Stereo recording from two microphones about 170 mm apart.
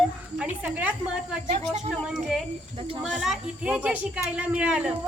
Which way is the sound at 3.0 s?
Centre (ahead or behind).